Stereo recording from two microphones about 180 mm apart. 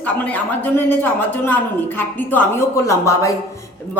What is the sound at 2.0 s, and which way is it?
Speech, 10° left (ahead or behind).